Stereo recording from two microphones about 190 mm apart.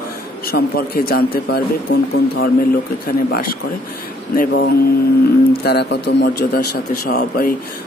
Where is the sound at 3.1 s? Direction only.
50° left (ahead or behind).